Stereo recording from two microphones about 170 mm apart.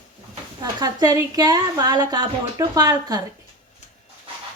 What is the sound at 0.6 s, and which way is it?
A woman's voice, 25° right (ahead or behind).